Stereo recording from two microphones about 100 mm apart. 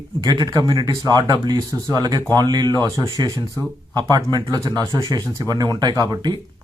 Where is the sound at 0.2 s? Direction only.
45° right (ahead or behind).